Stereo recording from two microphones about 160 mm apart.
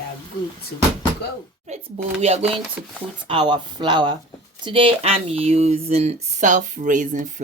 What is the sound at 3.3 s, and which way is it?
Speech, 30° right (ahead or behind).